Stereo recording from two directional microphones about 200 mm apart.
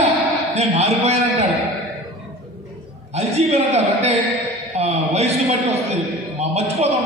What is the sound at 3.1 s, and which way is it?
A man's voice, 30° right (ahead or behind).